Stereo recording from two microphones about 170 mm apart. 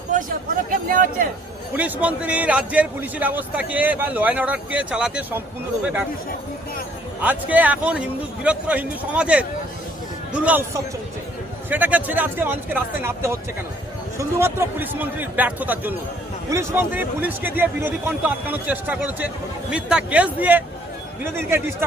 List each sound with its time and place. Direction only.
0.1 s a sound: 50° right (ahead or behind)
1.7 s a man's voice: 10° right (ahead or behind)
7.2 s a man's voice: 10° right (ahead or behind)
11.7 s a man's voice: 10° right (ahead or behind)